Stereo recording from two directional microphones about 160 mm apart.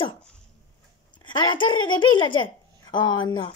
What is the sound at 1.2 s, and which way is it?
A woman's voice, 30° left (ahead or behind).